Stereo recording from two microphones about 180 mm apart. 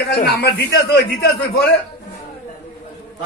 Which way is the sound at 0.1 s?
60° left (ahead or behind).